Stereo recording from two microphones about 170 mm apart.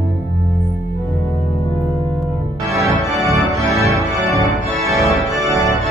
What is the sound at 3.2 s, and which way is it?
Organ, 20° right (ahead or behind).